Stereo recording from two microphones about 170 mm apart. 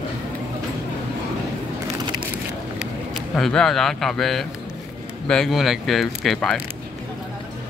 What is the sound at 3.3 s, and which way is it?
Speech, centre (ahead or behind).